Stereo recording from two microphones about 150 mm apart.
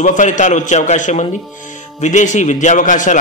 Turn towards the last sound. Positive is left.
turn(degrees=55)  # may be behind; listen again after turning